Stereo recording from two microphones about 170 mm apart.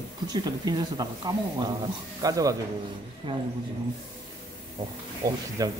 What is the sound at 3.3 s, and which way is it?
Speech, 30° right (ahead or behind).